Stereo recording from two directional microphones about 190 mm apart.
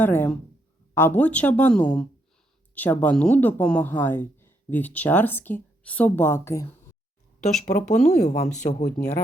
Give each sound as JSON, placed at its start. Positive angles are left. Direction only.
{"t": 0.0, "sound": "speech", "side_deg": 10}
{"t": 7.7, "sound": "speech", "side_deg": 40}